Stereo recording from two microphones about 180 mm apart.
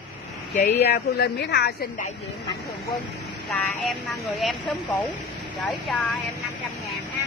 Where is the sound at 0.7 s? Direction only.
65° left (ahead or behind).